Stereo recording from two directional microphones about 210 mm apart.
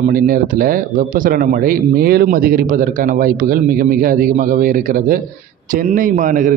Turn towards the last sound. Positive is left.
turn(degrees=-40)  # may be behind; listen again after turning